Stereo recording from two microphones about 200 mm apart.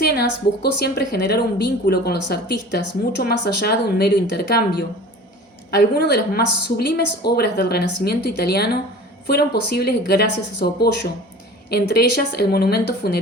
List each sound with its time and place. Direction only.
0.0 s a woman's voice: 50° left (ahead or behind)